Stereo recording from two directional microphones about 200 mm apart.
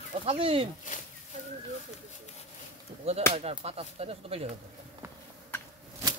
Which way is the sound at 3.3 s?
30° right (ahead or behind).